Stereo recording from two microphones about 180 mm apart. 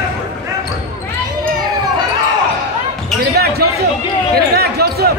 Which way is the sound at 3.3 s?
60° right (ahead or behind).